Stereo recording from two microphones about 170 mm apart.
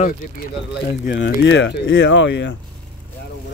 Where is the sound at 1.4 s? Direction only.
90° left.